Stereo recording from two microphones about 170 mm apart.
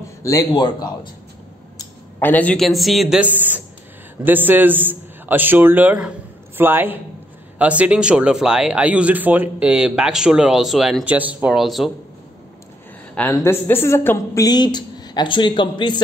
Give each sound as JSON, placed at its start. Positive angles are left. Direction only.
{"t": 0.2, "sound": "a woman's voice", "side_deg": 20}
{"t": 1.8, "sound": "a man's voice", "side_deg": 10}
{"t": 13.1, "sound": "a woman's voice", "side_deg": 10}